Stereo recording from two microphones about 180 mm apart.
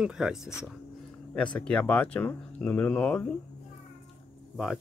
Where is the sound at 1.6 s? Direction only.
5° left (ahead or behind).